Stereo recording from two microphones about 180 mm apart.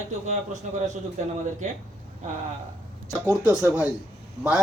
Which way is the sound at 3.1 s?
15° right (ahead or behind).